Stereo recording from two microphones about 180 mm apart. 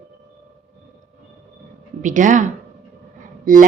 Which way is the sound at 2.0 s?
45° right (ahead or behind).